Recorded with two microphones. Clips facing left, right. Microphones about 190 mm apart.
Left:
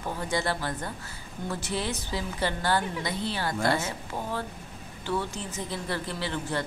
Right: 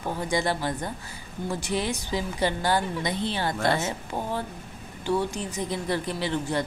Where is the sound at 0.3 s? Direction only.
15° right (ahead or behind).